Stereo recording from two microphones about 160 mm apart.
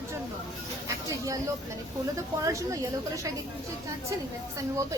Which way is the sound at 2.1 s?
20° right (ahead or behind).